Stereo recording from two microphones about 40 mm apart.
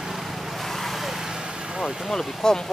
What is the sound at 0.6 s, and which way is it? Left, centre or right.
Vehicle, centre.